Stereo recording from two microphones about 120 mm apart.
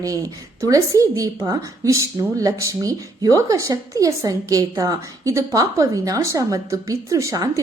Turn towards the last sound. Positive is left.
turn(degrees=-30)  # may be behind; listen again after turning